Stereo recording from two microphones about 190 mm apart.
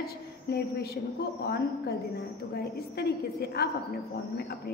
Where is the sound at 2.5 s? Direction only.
55° left (ahead or behind).